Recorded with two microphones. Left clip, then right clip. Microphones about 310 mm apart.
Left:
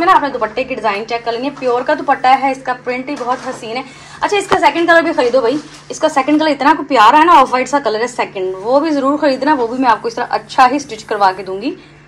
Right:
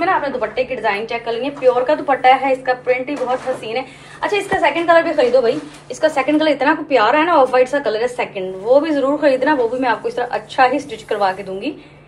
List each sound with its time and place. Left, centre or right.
0.0 s a woman's voice: left